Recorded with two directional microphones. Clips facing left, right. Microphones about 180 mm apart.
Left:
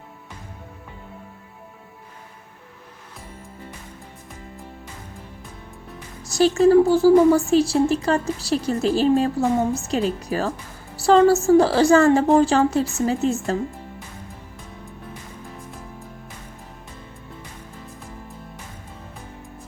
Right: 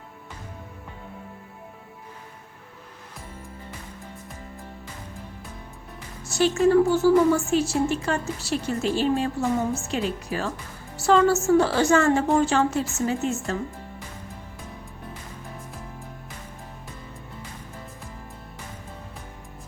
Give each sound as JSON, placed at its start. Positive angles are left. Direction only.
{"t": 6.2, "sound": "a woman's voice", "side_deg": 35}